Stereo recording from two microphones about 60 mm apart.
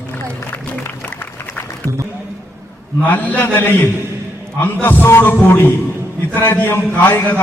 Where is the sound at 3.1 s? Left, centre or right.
Left.